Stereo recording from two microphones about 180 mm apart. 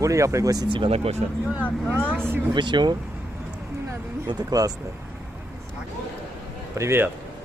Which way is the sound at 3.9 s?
20° right (ahead or behind).